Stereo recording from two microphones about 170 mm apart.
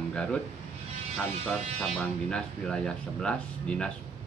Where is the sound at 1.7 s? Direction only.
5° left (ahead or behind).